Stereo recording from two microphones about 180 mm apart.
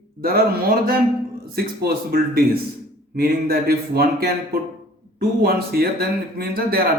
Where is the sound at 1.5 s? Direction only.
60° right (ahead or behind).